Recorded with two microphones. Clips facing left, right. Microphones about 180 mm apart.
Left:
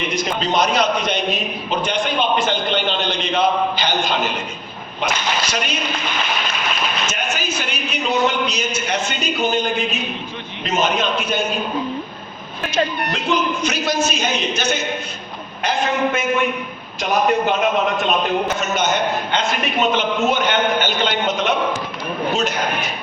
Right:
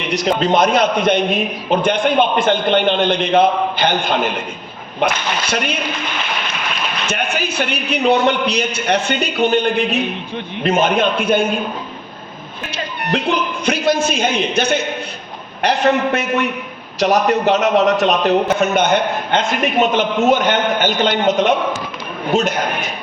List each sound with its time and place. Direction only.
0.3 s a man's voice: 55° right (ahead or behind)
7.1 s a man's voice: 60° right (ahead or behind)
13.1 s a man's voice: 60° right (ahead or behind)